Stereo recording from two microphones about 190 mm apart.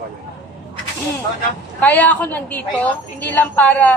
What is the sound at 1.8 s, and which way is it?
A woman's voice, 10° left (ahead or behind).